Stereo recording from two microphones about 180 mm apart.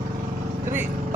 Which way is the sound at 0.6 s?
10° right (ahead or behind).